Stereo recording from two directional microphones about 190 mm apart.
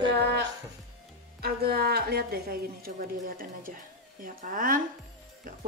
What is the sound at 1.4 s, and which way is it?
A woman's voice, 55° right (ahead or behind).